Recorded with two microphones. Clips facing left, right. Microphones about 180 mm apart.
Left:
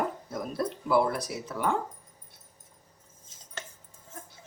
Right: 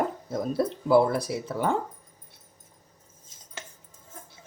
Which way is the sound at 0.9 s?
30° right (ahead or behind).